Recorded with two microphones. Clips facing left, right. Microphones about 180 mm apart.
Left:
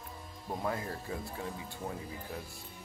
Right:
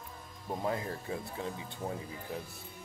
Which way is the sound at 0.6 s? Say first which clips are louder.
Right 2 dB; 25° right (ahead or behind).